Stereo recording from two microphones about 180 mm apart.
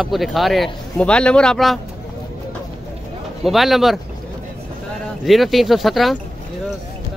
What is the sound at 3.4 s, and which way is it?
Speech, centre (ahead or behind).